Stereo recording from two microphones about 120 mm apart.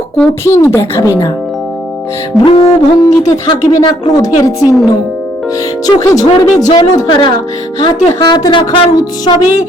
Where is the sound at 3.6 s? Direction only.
30° left (ahead or behind).